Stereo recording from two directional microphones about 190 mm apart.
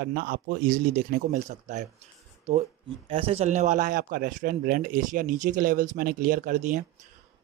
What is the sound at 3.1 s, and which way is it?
A man's voice, 30° right (ahead or behind).